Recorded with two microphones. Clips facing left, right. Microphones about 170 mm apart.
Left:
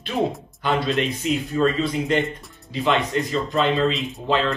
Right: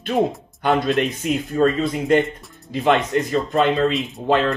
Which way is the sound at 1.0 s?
50° right (ahead or behind).